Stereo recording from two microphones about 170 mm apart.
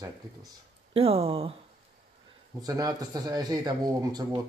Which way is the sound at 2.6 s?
20° right (ahead or behind).